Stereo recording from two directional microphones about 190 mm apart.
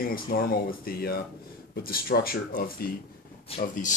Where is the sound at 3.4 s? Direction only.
40° left (ahead or behind).